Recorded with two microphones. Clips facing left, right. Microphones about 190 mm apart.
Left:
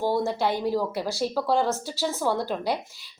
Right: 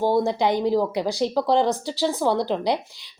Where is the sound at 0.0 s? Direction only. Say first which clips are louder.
Right 4 dB; 15° right (ahead or behind).